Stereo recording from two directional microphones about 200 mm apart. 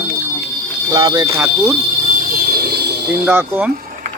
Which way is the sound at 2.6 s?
55° right (ahead or behind).